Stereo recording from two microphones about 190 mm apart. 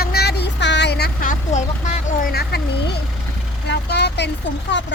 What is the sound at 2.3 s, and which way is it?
Speech, 55° left (ahead or behind).